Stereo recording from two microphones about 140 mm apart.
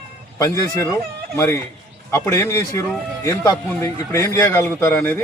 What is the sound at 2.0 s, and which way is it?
A man's voice, 15° left (ahead or behind).